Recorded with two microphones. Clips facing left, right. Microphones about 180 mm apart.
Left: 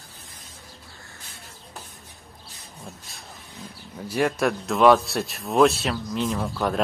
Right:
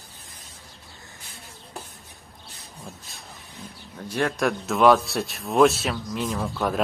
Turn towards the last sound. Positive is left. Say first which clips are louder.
# left 1 dB
turn(degrees=0)  # may be behind; listen again after turning